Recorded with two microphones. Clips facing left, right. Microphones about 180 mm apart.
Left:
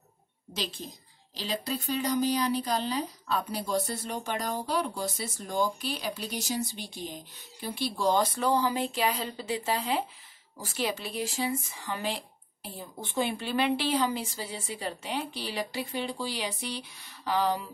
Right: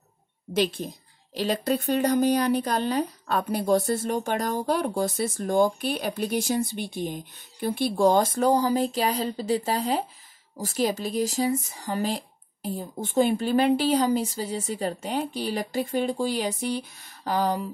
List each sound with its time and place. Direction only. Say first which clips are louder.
0.5 s a woman's voice: right 11 dB; 60° right (ahead or behind)